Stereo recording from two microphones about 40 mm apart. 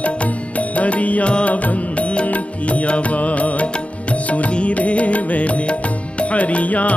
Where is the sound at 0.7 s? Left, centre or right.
Left.